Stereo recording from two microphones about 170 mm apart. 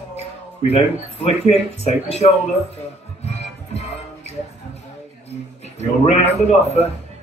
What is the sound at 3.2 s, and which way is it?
Music, 40° left (ahead or behind).